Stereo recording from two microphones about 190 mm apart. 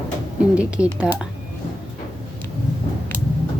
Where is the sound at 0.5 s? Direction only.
5° right (ahead or behind).